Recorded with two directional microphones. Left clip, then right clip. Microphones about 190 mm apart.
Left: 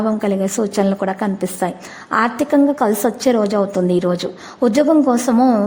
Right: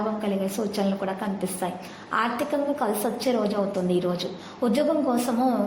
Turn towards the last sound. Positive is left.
turn(degrees=45)  # may be behind; listen again after turning